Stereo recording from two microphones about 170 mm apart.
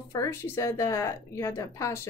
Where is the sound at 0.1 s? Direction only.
20° left (ahead or behind).